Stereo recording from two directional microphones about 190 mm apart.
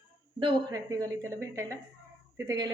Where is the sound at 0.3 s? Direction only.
20° right (ahead or behind).